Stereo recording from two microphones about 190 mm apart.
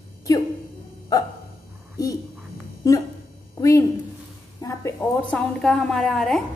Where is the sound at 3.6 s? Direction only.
15° left (ahead or behind).